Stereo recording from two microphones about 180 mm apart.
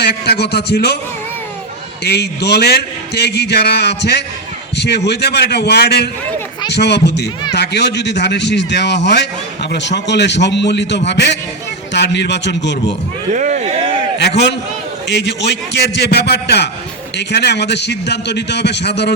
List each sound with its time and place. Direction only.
0.0 s a man's voice: 60° left (ahead or behind)
2.0 s a man's voice: 65° left (ahead or behind)
13.3 s a sound: 45° right (ahead or behind)
14.2 s a man's voice: 70° left (ahead or behind)